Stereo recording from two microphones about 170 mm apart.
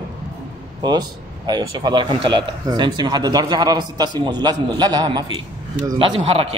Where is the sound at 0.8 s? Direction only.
25° right (ahead or behind).